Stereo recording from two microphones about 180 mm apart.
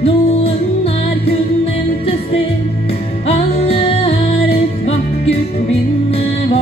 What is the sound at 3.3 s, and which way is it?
Music, 35° left (ahead or behind).